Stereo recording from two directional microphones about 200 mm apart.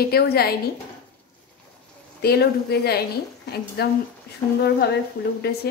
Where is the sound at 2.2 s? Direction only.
55° left (ahead or behind).